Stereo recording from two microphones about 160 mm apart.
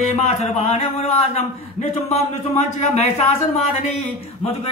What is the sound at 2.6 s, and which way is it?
A man's voice, 40° left (ahead or behind).